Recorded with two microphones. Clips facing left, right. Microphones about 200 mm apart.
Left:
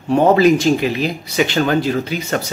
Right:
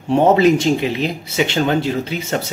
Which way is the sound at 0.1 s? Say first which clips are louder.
Left 1 dB; 25° right (ahead or behind).